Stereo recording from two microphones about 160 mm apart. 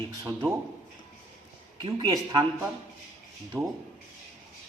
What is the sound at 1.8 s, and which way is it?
Speech, 25° right (ahead or behind).